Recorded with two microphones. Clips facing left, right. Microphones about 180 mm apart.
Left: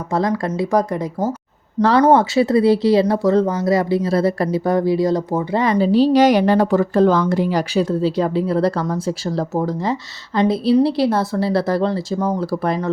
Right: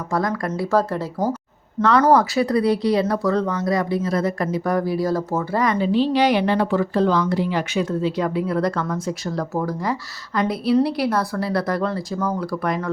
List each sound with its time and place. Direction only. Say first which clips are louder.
0.1 s speech: left 4 dB; 25° left (ahead or behind)
1.8 s speech: left 3 dB; 30° left (ahead or behind)
5.7 s a woman's voice: left 8 dB; 35° left (ahead or behind)